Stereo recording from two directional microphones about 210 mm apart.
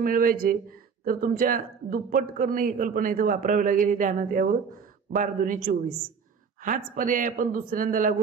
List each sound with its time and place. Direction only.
0.0 s speech: 40° right (ahead or behind)